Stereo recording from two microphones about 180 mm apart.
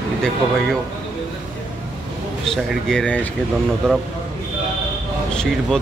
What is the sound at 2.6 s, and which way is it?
Speech, 5° left (ahead or behind).